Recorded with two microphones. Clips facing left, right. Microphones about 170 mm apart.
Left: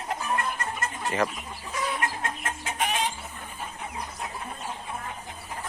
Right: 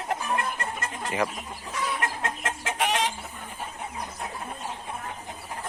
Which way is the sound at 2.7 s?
90° right.